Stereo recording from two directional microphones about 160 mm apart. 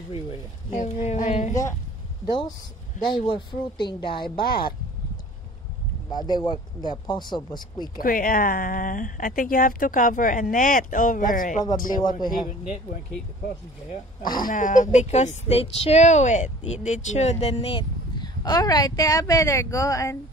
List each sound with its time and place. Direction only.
0.7 s a sound: 50° left (ahead or behind)
1.5 s speech: 20° left (ahead or behind)
3.1 s speech: 30° left (ahead or behind)
4.4 s speech: 75° left (ahead or behind)
6.0 s speech: 25° left (ahead or behind)
7.9 s speech: 60° left (ahead or behind)
14.3 s speech: 55° left (ahead or behind); by 20.2 s 20° left (ahead or behind)